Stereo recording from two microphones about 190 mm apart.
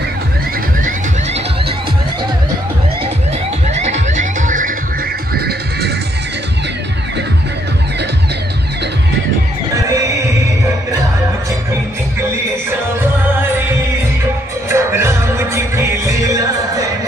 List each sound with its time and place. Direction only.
3.6 s music: 35° right (ahead or behind)
14.7 s music: 15° right (ahead or behind)